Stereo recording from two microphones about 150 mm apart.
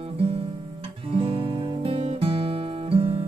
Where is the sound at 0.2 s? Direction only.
40° right (ahead or behind).